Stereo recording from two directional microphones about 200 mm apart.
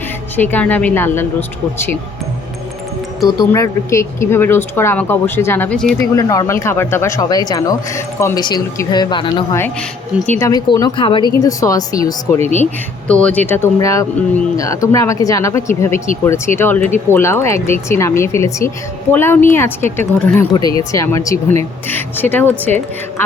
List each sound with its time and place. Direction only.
0.3 s speech: 10° left (ahead or behind)
3.2 s speech: 15° left (ahead or behind)
6.1 s speech: 15° left (ahead or behind)
10.2 s speech: 10° left (ahead or behind)
13.1 s speech: 5° left (ahead or behind)